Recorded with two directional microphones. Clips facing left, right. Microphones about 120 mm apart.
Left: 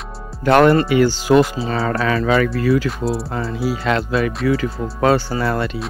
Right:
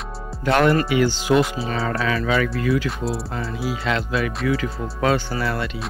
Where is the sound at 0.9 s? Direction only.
45° left (ahead or behind).